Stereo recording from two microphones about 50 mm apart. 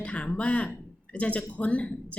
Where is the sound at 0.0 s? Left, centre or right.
Left.